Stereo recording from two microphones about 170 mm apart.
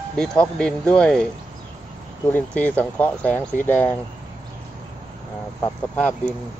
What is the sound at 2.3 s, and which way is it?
Speech, 10° left (ahead or behind).